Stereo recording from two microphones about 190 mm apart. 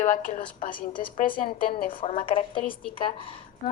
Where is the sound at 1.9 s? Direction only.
30° left (ahead or behind).